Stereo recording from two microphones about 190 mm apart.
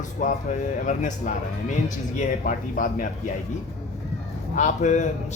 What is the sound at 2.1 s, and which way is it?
Speech, 45° left (ahead or behind).